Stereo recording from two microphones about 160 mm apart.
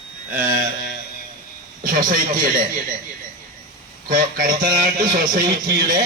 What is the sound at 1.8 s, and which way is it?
Speech, 60° right (ahead or behind).